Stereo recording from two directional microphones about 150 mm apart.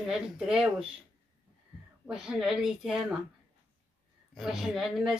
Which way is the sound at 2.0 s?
5° right (ahead or behind).